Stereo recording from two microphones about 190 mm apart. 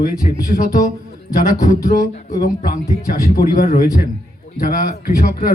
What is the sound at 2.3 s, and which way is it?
Speech, 50° left (ahead or behind).